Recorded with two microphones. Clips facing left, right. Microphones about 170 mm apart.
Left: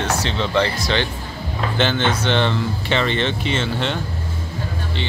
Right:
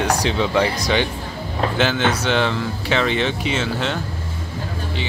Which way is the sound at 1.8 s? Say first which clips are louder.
Left 1 dB; 5° right (ahead or behind).